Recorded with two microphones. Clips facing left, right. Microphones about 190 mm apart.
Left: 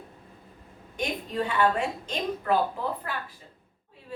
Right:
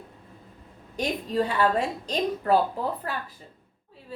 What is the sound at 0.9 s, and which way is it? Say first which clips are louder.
Speech: right 4 dB; 35° right (ahead or behind).